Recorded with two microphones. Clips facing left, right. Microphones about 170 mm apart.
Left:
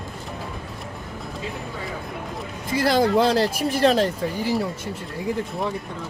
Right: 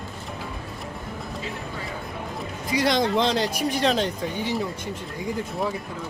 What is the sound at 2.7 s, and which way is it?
Speech, 5° left (ahead or behind).